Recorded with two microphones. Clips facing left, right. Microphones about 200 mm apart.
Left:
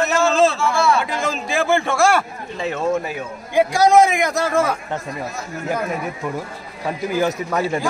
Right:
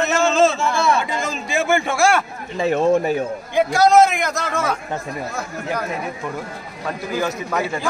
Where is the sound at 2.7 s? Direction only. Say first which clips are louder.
Right 5 dB; 35° right (ahead or behind).